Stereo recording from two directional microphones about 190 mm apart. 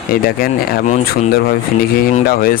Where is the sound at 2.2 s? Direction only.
50° left (ahead or behind).